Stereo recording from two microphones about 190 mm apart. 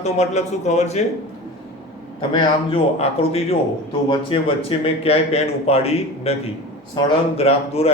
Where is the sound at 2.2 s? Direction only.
25° left (ahead or behind).